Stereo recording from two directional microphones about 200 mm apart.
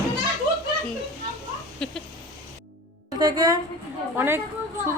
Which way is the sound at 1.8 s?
5° left (ahead or behind).